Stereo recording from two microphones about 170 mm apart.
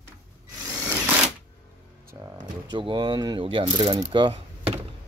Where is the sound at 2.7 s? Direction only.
30° right (ahead or behind).